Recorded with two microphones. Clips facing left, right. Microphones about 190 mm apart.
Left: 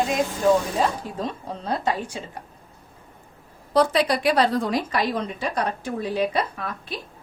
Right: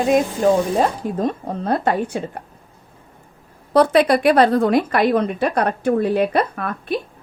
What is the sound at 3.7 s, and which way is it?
A woman's voice, 60° right (ahead or behind).